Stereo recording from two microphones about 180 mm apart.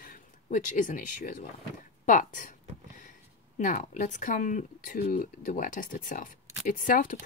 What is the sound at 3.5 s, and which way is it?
Speech, 45° left (ahead or behind).